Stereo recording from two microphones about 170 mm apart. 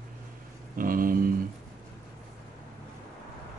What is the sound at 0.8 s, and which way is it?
Mantra, 55° right (ahead or behind).